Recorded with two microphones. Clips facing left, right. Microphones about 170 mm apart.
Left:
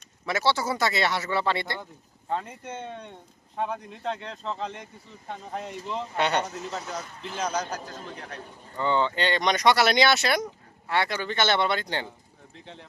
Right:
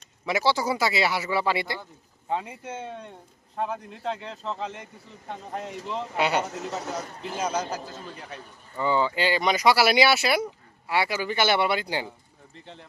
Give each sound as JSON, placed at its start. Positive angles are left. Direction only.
{"t": 0.3, "sound": "a man's voice", "side_deg": -15}
{"t": 7.0, "sound": "a man's voice", "side_deg": -45}
{"t": 7.3, "sound": "a man's voice", "side_deg": -10}